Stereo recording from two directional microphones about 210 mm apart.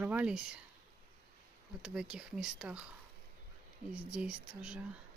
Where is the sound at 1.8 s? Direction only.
5° right (ahead or behind).